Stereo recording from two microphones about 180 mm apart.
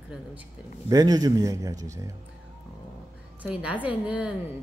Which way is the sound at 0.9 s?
20° right (ahead or behind).